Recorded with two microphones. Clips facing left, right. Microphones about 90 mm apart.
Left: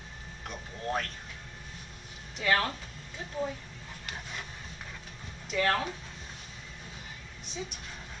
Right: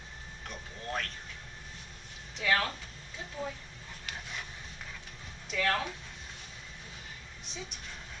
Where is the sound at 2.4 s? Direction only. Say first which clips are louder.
Left 2 dB; centre (ahead or behind).